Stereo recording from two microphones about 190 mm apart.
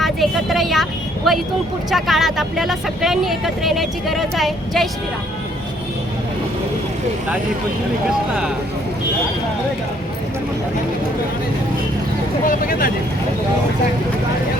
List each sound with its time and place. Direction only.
0.0 s speech: centre (ahead or behind)
12.5 s speech: 50° left (ahead or behind)